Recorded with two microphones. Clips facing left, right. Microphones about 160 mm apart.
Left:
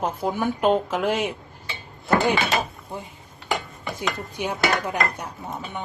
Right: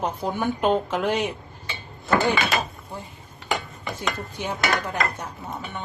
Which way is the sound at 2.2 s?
20° left (ahead or behind).